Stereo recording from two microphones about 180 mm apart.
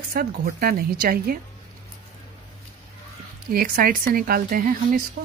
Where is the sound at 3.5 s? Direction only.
55° right (ahead or behind).